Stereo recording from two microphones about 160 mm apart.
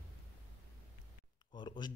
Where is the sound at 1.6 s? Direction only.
30° left (ahead or behind).